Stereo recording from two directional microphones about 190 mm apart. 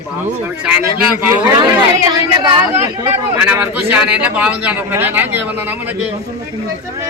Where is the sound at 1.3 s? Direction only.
20° right (ahead or behind).